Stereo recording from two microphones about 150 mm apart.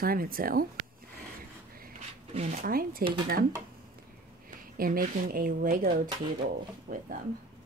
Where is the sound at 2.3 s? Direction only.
45° right (ahead or behind).